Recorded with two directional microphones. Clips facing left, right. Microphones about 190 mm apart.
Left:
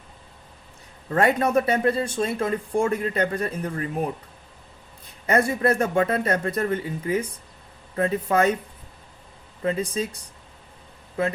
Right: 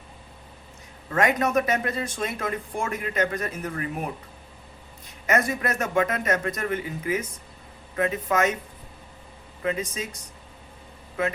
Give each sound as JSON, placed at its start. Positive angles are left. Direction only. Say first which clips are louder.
{"t": 1.1, "sound": "speech", "louder": "left 2 dB", "side_deg": 30}
{"t": 5.2, "sound": "speech", "louder": "left 4 dB", "side_deg": 30}
{"t": 9.6, "sound": "speech", "louder": "left 3 dB", "side_deg": 30}
{"t": 11.2, "sound": "speech", "louder": "left 2 dB", "side_deg": 30}